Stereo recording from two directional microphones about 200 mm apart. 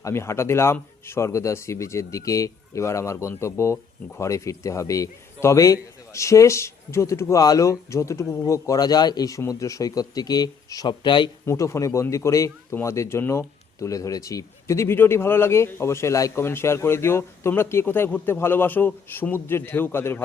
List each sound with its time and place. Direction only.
0.0 s a man's voice: 15° left (ahead or behind)